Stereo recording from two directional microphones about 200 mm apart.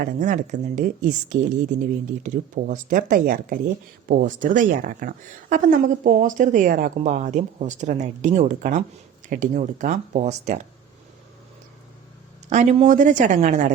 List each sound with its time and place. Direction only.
0.0 s a woman's voice: 40° right (ahead or behind)
12.5 s a woman's voice: 35° right (ahead or behind)